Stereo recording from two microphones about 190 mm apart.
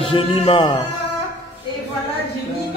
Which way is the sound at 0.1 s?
30° left (ahead or behind).